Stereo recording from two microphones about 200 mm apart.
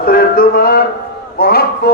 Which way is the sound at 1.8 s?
50° left (ahead or behind).